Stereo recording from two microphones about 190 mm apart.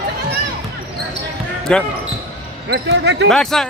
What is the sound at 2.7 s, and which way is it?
Speech, 65° right (ahead or behind).